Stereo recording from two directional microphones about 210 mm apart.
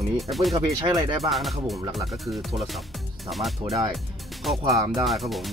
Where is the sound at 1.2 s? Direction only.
Centre (ahead or behind).